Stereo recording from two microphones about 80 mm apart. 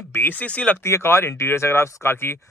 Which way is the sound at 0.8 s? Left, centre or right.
Left.